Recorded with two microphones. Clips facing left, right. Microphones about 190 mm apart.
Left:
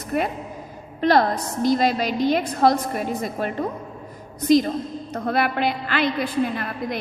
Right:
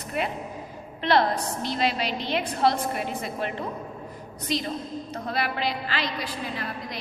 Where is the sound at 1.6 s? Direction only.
45° left (ahead or behind).